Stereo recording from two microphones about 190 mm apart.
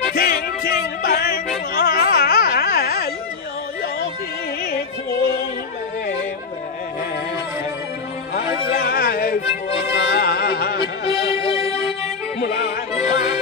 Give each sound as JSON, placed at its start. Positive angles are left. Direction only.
{"t": 0.1, "sound": "music", "side_deg": 55}
{"t": 1.8, "sound": "carnatic music", "side_deg": 55}
{"t": 8.7, "sound": "music", "side_deg": 55}
{"t": 11.4, "sound": "music", "side_deg": 30}
{"t": 12.4, "sound": "music", "side_deg": 60}